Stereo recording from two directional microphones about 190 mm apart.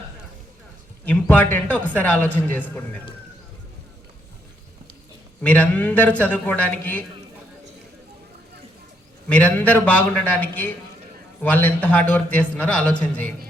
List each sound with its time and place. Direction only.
1.0 s a man's voice: 10° left (ahead or behind)
5.4 s a man's voice: 5° left (ahead or behind)
9.3 s a man's voice: 10° left (ahead or behind)